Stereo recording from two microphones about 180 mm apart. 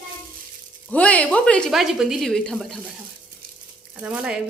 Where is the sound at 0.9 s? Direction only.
5° left (ahead or behind).